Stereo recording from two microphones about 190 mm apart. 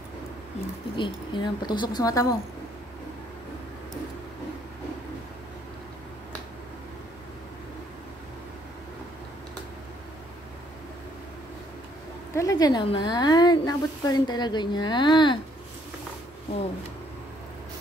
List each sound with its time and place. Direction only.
0.9 s speech: 25° left (ahead or behind)
12.4 s speech: 20° left (ahead or behind)